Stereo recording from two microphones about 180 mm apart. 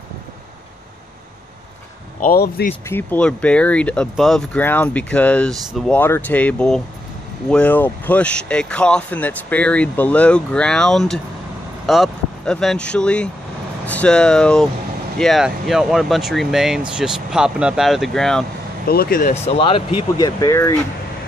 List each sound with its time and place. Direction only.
2.1 s speech: 55° left (ahead or behind)
2.9 s speech: 10° left (ahead or behind)
18.9 s speech: 60° left (ahead or behind)
19.4 s speech: 30° left (ahead or behind); by 20.7 s 15° left (ahead or behind)